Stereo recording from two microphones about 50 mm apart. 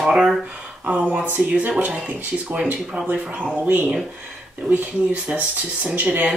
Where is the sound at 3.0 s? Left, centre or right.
Right.